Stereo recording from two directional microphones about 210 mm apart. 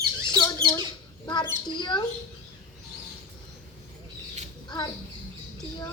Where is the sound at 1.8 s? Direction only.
20° left (ahead or behind).